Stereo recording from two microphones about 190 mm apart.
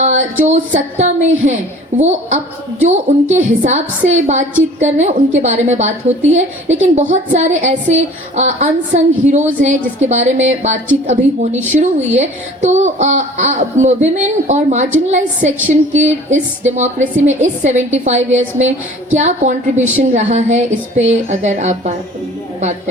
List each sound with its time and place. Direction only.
0.0 s a woman's voice: 40° right (ahead or behind)